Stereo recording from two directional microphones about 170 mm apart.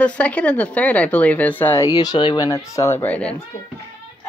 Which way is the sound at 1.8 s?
25° left (ahead or behind).